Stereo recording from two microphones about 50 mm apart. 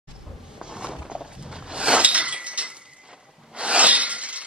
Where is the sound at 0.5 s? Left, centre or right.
Centre.